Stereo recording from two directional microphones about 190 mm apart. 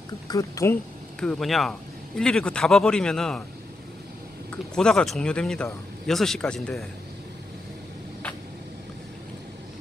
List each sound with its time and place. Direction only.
0.3 s speech: 15° left (ahead or behind)
1.2 s speech: centre (ahead or behind)
4.5 s speech: 5° left (ahead or behind)